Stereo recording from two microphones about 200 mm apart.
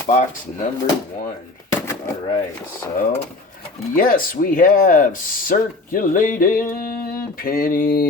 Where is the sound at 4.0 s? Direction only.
45° left (ahead or behind).